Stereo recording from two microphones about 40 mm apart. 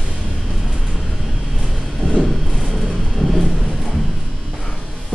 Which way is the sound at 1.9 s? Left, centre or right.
Centre.